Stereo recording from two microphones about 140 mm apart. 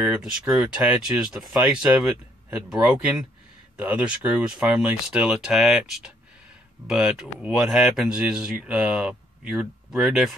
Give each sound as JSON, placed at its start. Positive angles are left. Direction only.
{"t": 0.0, "sound": "speech", "side_deg": -5}